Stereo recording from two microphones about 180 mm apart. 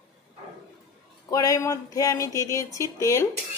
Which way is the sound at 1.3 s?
20° left (ahead or behind).